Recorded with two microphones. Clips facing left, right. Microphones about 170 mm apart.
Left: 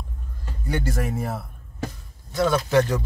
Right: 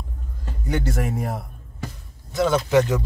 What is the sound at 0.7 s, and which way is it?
Speech, 20° right (ahead or behind).